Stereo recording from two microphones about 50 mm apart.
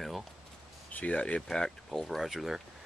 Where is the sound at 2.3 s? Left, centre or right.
Centre.